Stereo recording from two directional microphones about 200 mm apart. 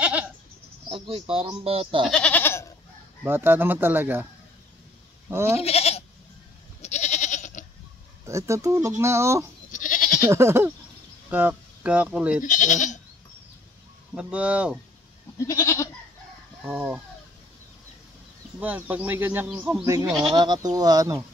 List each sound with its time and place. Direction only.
0.8 s speech: 25° right (ahead or behind)
2.0 s goat: 5° left (ahead or behind)
3.3 s speech: 10° right (ahead or behind)
5.3 s speech: 10° right (ahead or behind)
5.6 s goat: 30° left (ahead or behind)
8.3 s speech: 15° right (ahead or behind)
9.7 s goat: 40° left (ahead or behind)
10.3 s speech: 10° right (ahead or behind)
12.4 s speech: 40° left (ahead or behind)
14.1 s speech: 5° right (ahead or behind)
15.3 s goat: 15° left (ahead or behind)
16.6 s speech: 5° right (ahead or behind)
18.6 s speech: 10° right (ahead or behind)